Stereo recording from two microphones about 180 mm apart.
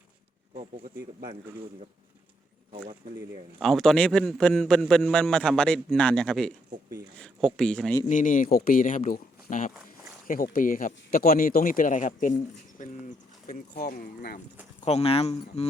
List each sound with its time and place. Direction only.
3.6 s a man's voice: centre (ahead or behind)
8.0 s speech: 45° left (ahead or behind)
9.7 s a sound: 5° right (ahead or behind)
10.2 s speech: 50° left (ahead or behind)
14.8 s speech: 35° left (ahead or behind)